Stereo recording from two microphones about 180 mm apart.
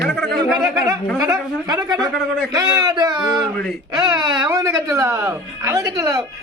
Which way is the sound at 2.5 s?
20° right (ahead or behind).